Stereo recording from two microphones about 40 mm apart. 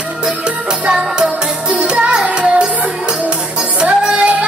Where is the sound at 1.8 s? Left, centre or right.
Right.